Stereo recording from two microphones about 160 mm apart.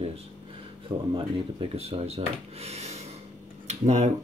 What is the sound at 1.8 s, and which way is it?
Speech, 40° right (ahead or behind).